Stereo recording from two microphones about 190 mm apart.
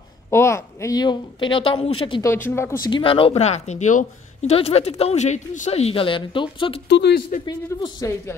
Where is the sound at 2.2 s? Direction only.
10° left (ahead or behind).